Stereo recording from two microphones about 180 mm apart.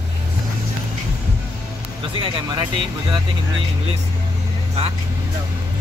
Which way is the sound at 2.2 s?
25° right (ahead or behind).